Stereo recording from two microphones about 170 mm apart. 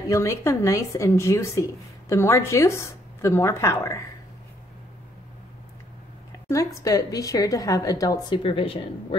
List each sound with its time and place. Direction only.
0.1 s speech: 15° left (ahead or behind)
6.5 s a woman's voice: 20° left (ahead or behind)
8.4 s a woman's voice: 30° left (ahead or behind)